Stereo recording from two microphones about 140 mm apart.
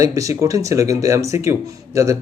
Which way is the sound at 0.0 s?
25° right (ahead or behind).